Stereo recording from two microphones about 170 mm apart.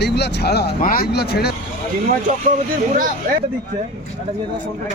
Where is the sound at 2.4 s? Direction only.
50° right (ahead or behind).